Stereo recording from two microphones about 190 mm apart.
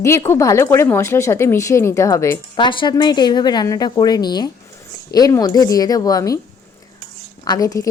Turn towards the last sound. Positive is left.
turn(degrees=20)  # may be behind; listen again after turning